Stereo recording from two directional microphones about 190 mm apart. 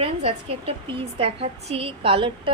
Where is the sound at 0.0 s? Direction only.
30° right (ahead or behind).